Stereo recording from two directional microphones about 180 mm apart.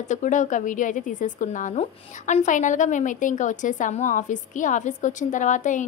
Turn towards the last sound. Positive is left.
turn(degrees=45)  # may be behind; listen again after turning